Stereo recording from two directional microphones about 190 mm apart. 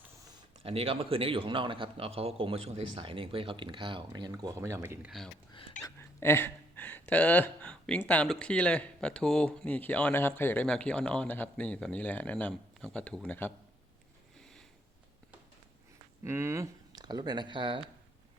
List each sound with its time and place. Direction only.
0.6 s a man's voice: 30° right (ahead or behind); by 5.1 s 10° right (ahead or behind)
5.8 s speech: 15° left (ahead or behind)
16.2 s speech: 15° right (ahead or behind)